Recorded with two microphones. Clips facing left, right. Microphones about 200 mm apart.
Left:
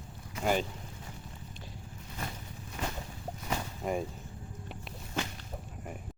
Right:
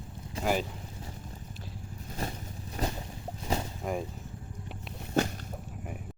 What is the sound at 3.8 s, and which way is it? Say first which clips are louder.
Vehicle: left 1 dB; centre (ahead or behind).